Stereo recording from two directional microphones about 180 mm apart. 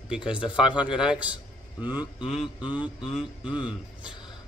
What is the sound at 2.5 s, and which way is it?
Speech, 25° left (ahead or behind).